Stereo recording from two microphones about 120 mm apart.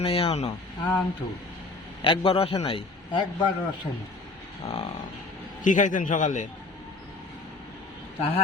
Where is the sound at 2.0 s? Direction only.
50° left (ahead or behind).